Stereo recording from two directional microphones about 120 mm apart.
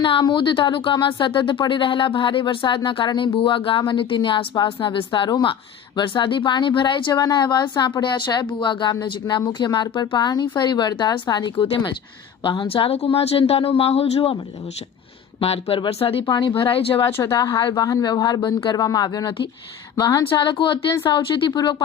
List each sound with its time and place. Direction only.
0.0 s speech: 45° left (ahead or behind)
15.4 s speech: 55° left (ahead or behind)
16.2 s speech: 40° left (ahead or behind)
17.1 s speech: 20° left (ahead or behind)
17.3 s speech: 35° left (ahead or behind)